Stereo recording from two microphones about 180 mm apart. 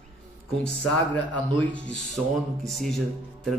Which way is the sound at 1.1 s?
5° left (ahead or behind).